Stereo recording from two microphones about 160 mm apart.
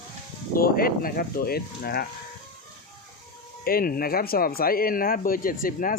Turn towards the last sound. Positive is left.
turn(degrees=60)  # may be behind; listen again after turning